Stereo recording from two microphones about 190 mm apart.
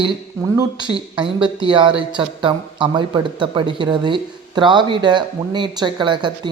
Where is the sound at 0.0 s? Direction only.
20° right (ahead or behind).